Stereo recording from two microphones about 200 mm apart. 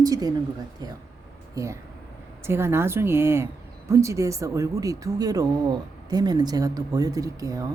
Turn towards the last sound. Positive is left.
turn(degrees=-15)  # may be behind; listen again after turning